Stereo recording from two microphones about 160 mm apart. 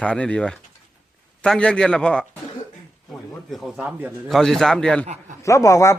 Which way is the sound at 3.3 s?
Centre (ahead or behind).